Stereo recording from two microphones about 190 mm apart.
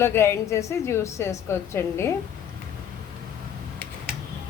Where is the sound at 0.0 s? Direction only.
15° left (ahead or behind).